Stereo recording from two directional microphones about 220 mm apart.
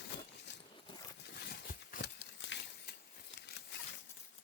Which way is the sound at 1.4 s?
45° left (ahead or behind).